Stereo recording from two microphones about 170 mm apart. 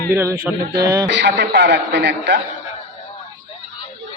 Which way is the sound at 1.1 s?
90° right.